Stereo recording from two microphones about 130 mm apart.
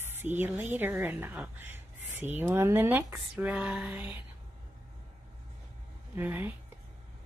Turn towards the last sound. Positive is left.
turn(degrees=-15)  # may be behind; listen again after turning